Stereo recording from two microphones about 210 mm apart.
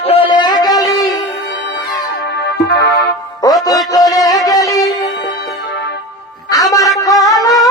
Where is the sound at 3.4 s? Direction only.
15° left (ahead or behind).